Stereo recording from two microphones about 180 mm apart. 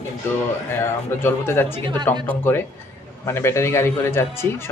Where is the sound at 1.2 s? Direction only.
10° left (ahead or behind).